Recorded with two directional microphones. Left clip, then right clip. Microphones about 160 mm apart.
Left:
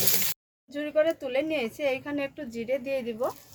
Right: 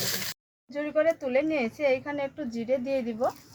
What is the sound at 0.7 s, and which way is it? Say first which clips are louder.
Speech: even; 50° left (ahead or behind).